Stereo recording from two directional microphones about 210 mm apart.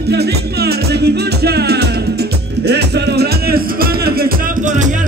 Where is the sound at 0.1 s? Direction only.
50° right (ahead or behind).